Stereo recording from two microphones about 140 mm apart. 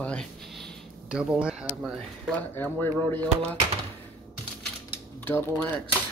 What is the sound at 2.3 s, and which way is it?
Speech, 10° left (ahead or behind).